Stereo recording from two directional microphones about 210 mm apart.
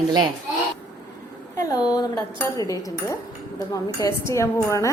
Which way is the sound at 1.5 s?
15° left (ahead or behind).